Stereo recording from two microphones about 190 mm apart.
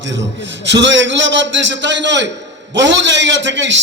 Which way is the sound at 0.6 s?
70° right (ahead or behind).